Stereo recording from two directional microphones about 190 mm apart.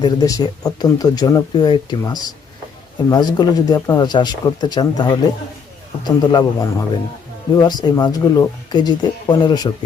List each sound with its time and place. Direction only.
0.0 s speech: 20° left (ahead or behind)
6.3 s a man's voice: 15° left (ahead or behind)